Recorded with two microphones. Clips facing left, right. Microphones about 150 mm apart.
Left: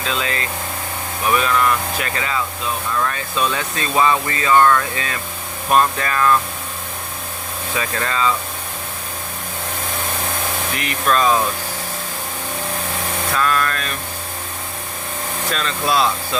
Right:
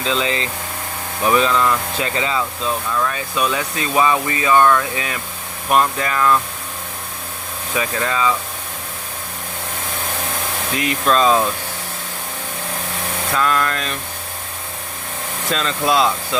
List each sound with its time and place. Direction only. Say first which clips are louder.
0.0 s speech: right 3 dB; 20° right (ahead or behind)
7.8 s speech: right 2 dB; 10° right (ahead or behind)
10.8 s speech: right 3 dB; 20° right (ahead or behind)
13.3 s speech: right 1 dB; 20° right (ahead or behind)
15.5 s speech: right 2 dB; 20° right (ahead or behind)